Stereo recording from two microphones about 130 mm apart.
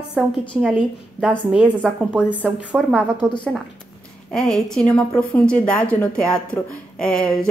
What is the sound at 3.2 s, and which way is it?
Speech, 20° right (ahead or behind).